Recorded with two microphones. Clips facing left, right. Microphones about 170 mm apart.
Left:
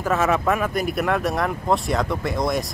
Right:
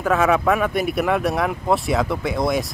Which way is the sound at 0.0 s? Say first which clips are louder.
Right 3 dB; centre (ahead or behind).